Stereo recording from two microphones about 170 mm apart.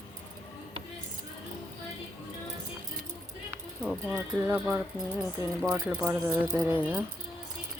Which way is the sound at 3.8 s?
5° right (ahead or behind).